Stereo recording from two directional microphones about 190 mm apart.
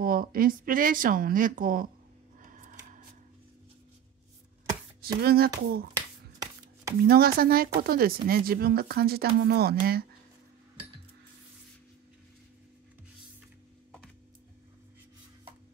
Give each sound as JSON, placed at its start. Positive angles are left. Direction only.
{"t": 0.0, "sound": "speech", "side_deg": -50}
{"t": 2.4, "sound": "a sound", "side_deg": -45}
{"t": 5.0, "sound": "speech", "side_deg": -50}
{"t": 5.9, "sound": "finger snapping", "side_deg": -15}
{"t": 7.1, "sound": "speech", "side_deg": -55}